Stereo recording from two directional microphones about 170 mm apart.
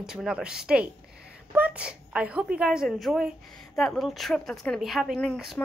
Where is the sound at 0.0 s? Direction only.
5° right (ahead or behind).